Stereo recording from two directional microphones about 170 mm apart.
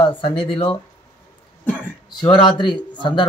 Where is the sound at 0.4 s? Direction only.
30° left (ahead or behind).